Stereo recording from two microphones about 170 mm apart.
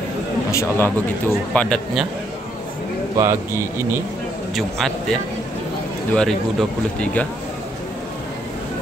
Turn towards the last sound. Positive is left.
turn(degrees=5)  # may be behind; listen again after turning